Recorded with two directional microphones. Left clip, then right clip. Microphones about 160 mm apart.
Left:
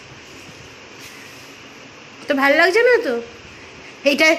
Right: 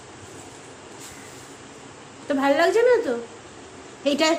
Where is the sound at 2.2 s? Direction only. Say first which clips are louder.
Left 5 dB; 30° left (ahead or behind).